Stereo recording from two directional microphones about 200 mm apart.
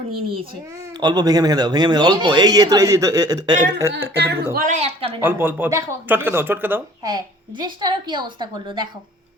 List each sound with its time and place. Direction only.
0.9 s a man's voice: 20° right (ahead or behind)
4.2 s speech: 55° right (ahead or behind)
4.5 s a woman's voice: 40° right (ahead or behind)
5.2 s speech: 10° right (ahead or behind)